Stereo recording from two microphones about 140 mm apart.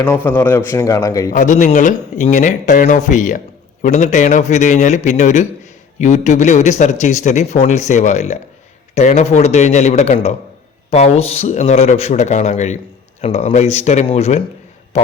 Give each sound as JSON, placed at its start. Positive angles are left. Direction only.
{"t": 0.0, "sound": "a man's voice", "side_deg": 15}
{"t": 1.3, "sound": "speech", "side_deg": 65}
{"t": 14.9, "sound": "a sound", "side_deg": 50}